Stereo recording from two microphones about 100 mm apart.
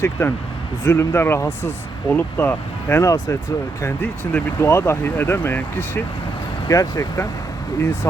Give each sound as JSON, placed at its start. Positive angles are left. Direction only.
{"t": 0.0, "sound": "speech", "side_deg": 25}
{"t": 3.0, "sound": "speech", "side_deg": 30}
{"t": 4.0, "sound": "speech", "side_deg": 20}
{"t": 6.7, "sound": "speech", "side_deg": 35}